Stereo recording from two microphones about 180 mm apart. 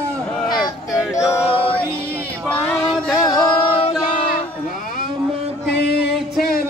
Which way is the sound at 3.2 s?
25° left (ahead or behind).